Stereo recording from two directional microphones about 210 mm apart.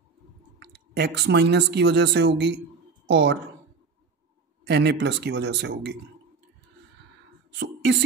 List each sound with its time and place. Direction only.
0.6 s speech: 50° right (ahead or behind)
4.6 s speech: 55° right (ahead or behind)
7.5 s a sound: 55° right (ahead or behind)